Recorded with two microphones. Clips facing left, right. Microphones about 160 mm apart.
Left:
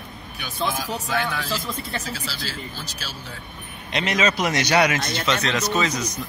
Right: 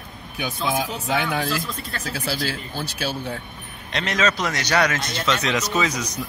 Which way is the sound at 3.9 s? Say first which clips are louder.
Left 1 dB; 10° left (ahead or behind).